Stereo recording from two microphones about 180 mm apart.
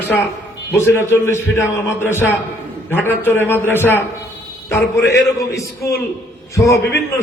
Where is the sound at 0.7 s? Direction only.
10° left (ahead or behind).